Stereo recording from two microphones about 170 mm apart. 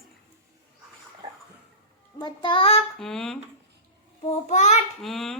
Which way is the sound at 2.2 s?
30° left (ahead or behind).